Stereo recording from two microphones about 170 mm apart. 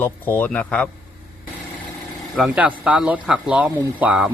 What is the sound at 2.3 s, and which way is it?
Speech, 5° right (ahead or behind).